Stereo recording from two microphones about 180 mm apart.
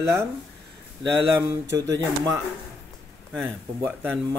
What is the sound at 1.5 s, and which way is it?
Speech, 15° right (ahead or behind).